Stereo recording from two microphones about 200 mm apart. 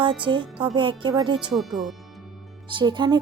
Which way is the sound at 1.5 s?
Centre (ahead or behind).